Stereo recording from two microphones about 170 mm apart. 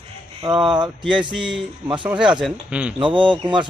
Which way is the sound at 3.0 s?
30° right (ahead or behind).